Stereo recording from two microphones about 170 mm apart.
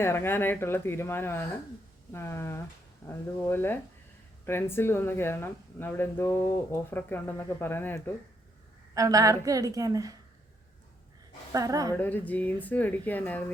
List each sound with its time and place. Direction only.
0.0 s speech: 15° left (ahead or behind)
9.0 s a woman's voice: 20° right (ahead or behind)
11.5 s a woman's voice: 20° right (ahead or behind)
11.9 s speech: 10° left (ahead or behind)